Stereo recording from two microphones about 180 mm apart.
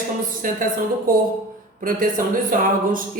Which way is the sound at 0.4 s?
50° right (ahead or behind).